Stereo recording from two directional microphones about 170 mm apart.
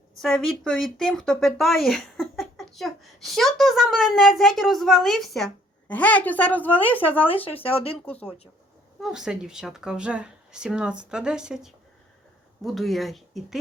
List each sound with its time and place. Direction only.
0.2 s speech: centre (ahead or behind)
7.2 s speech: 35° left (ahead or behind)
9.0 s speech: centre (ahead or behind)